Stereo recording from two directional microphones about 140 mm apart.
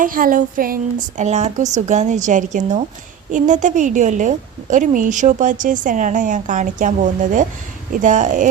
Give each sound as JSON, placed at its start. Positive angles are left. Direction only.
{"t": 0.0, "sound": "a woman's voice", "side_deg": -80}